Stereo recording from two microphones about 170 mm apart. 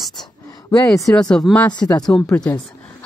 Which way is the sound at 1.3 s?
5° left (ahead or behind).